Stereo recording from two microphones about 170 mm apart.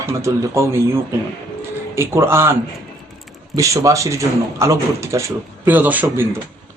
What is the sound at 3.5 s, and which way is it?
Speech, 20° right (ahead or behind).